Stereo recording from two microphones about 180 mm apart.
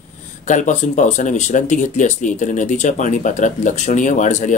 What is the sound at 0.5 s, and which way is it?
Speech, 45° left (ahead or behind).